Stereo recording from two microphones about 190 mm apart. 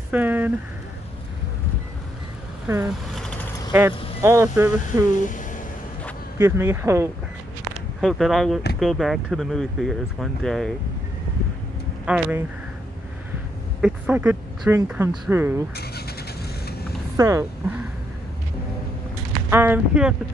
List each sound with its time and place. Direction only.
0.1 s speech: 10° right (ahead or behind)
2.9 s vehicle: centre (ahead or behind)
3.7 s speech: 15° right (ahead or behind)
5.2 s a sound: 40° left (ahead or behind)
6.3 s speech: 15° right (ahead or behind)
8.0 s speech: centre (ahead or behind)
12.1 s speech: 10° right (ahead or behind)
13.7 s speech: 5° right (ahead or behind)
15.7 s speech: 55° left (ahead or behind)
17.2 s speech: 15° right (ahead or behind)
19.5 s speech: 10° right (ahead or behind)